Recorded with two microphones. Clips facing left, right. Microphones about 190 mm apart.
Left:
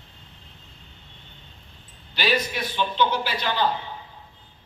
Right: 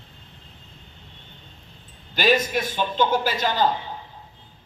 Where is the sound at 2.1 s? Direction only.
45° right (ahead or behind).